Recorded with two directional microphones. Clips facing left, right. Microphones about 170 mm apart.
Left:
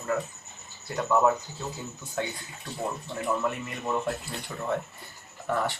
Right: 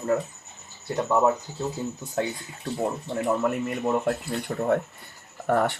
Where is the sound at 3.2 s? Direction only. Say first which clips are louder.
Right 4 dB; 45° right (ahead or behind).